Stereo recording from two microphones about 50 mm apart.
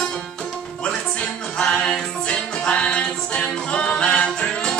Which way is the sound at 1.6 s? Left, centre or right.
Centre.